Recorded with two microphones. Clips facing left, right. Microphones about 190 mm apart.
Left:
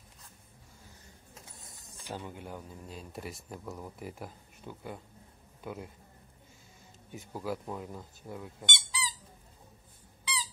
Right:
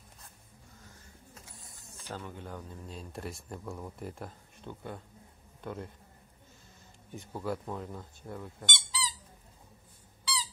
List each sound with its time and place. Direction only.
1.8 s a man's voice: 15° left (ahead or behind)
7.2 s speech: centre (ahead or behind)
8.6 s squeak: 15° left (ahead or behind)